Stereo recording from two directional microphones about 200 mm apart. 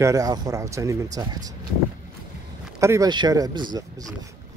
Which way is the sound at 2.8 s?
15° right (ahead or behind).